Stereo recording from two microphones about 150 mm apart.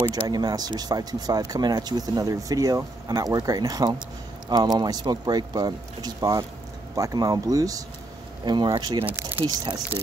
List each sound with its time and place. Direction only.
0.0 s speech: 25° right (ahead or behind)
9.0 s speech: 10° right (ahead or behind)